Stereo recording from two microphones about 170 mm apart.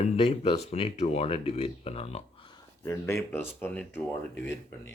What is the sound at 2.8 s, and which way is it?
Speech, 15° left (ahead or behind).